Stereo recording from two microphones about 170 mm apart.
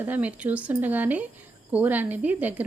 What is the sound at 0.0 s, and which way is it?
A woman's voice, 10° right (ahead or behind).